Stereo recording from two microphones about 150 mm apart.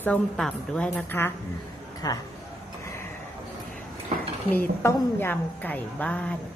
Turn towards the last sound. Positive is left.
turn(degrees=10)  # may be behind; listen again after turning